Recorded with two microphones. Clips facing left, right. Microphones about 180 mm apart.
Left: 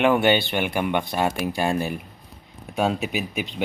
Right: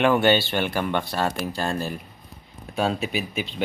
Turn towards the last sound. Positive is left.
turn(degrees=15)  # may be behind; listen again after turning